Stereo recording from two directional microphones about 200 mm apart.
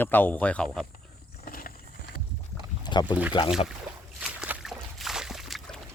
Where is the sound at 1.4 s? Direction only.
45° left (ahead or behind).